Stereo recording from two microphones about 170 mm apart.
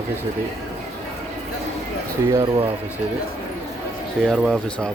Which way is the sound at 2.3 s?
20° right (ahead or behind).